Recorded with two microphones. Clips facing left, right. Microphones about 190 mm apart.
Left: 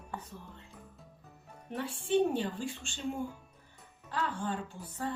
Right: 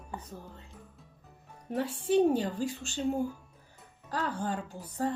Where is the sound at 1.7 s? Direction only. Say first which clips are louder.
Right 3 dB; 40° right (ahead or behind).